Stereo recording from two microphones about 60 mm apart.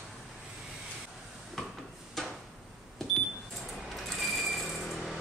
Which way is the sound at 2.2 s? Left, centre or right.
Centre.